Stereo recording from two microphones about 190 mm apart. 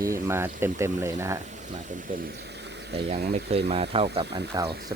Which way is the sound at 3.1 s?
40° right (ahead or behind).